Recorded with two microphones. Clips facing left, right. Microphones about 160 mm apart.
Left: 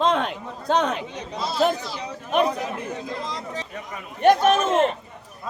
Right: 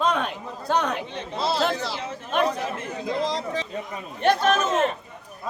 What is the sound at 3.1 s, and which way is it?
Speech, 80° right.